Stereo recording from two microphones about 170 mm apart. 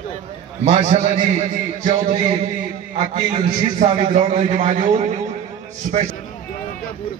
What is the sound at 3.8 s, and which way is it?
Speech, 35° right (ahead or behind).